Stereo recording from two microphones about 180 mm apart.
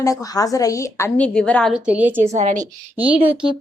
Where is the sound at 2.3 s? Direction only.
45° right (ahead or behind).